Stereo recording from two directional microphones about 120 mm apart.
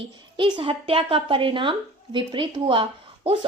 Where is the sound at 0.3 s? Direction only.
40° right (ahead or behind).